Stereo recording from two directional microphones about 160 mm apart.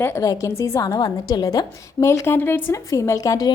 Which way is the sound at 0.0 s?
20° left (ahead or behind).